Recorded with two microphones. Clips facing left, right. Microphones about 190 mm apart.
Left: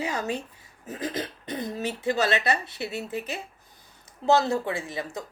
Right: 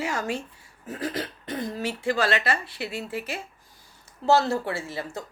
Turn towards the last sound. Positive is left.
turn(degrees=15)  # may be behind; listen again after turning